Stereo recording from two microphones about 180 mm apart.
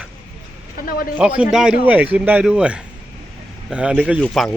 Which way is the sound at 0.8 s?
55° left (ahead or behind).